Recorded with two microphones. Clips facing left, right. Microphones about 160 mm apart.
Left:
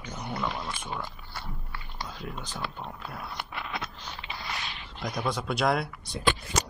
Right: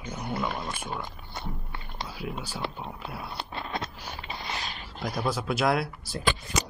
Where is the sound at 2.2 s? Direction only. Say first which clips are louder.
Right 5 dB; 5° right (ahead or behind).